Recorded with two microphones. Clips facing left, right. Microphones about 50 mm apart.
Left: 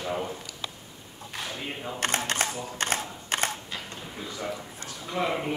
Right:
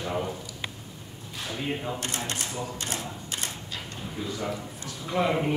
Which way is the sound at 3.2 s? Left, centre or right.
Left.